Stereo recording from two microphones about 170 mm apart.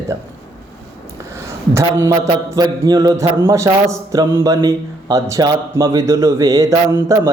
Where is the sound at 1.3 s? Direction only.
15° right (ahead or behind).